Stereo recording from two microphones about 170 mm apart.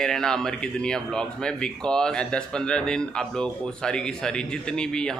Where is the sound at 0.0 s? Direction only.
5° left (ahead or behind).